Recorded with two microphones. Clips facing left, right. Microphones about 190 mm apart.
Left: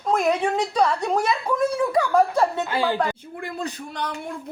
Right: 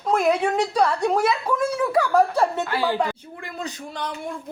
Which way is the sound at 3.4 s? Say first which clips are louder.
Left 4 dB; 60° left (ahead or behind).